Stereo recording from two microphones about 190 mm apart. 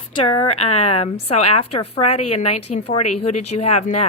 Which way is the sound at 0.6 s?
35° left (ahead or behind).